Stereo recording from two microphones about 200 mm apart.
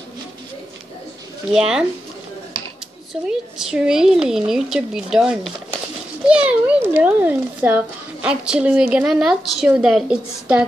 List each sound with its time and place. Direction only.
1.5 s a child's voice: 5° right (ahead or behind)
3.3 s a child's voice: 5° right (ahead or behind)